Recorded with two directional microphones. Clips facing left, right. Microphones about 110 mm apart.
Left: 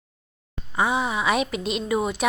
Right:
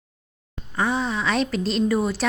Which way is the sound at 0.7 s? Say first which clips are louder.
Left 1 dB; 10° left (ahead or behind).